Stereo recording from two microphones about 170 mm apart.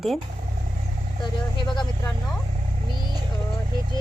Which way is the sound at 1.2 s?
25° left (ahead or behind).